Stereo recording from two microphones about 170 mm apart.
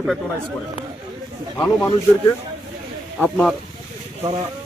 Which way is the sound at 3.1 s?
5° left (ahead or behind).